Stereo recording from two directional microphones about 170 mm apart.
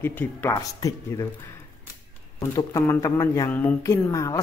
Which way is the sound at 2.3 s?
20° left (ahead or behind).